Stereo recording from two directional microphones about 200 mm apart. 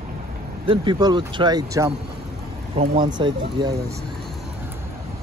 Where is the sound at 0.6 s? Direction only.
25° right (ahead or behind).